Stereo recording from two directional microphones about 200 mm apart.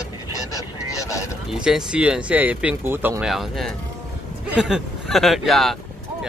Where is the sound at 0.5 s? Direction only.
15° left (ahead or behind).